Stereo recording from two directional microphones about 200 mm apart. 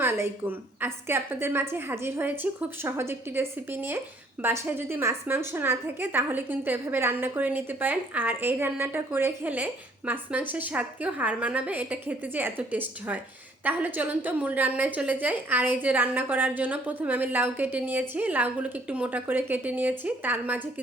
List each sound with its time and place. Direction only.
0.0 s a woman's voice: 10° right (ahead or behind)